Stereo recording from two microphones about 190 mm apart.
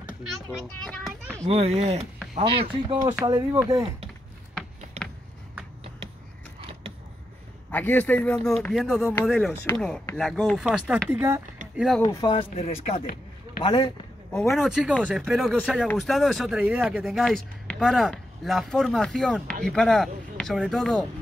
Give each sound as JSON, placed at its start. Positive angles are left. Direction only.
{"t": 0.8, "sound": "speech", "side_deg": 5}
{"t": 1.5, "sound": "speech", "side_deg": -35}
{"t": 7.7, "sound": "a man's voice", "side_deg": 10}
{"t": 11.7, "sound": "speech", "side_deg": 0}
{"t": 12.0, "sound": "speech", "side_deg": 20}
{"t": 14.3, "sound": "speech", "side_deg": 0}